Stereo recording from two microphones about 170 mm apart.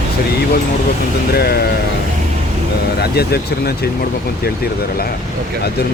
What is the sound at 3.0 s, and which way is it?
Speech, 70° left (ahead or behind).